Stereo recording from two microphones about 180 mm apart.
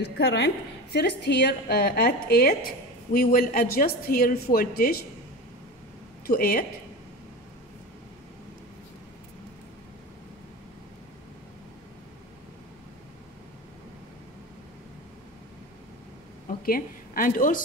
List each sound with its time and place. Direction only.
0.0 s a woman's voice: 70° left (ahead or behind)
6.2 s a woman's voice: 55° left (ahead or behind)
16.6 s a woman's voice: 55° left (ahead or behind)